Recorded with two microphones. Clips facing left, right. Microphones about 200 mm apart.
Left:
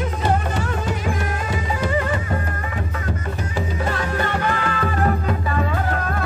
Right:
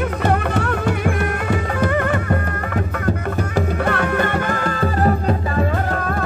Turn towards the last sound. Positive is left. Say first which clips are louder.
# right 3 dB
turn(degrees=-35)  # may be behind; listen again after turning